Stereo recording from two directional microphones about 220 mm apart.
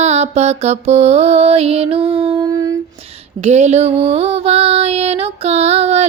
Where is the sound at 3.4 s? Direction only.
30° right (ahead or behind).